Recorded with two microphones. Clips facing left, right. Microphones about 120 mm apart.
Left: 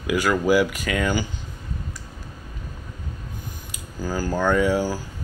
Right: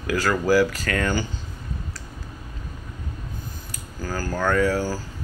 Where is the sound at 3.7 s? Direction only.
15° left (ahead or behind).